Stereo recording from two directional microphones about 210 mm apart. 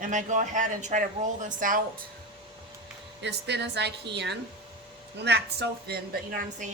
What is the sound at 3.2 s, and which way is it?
A woman's voice, 55° right (ahead or behind).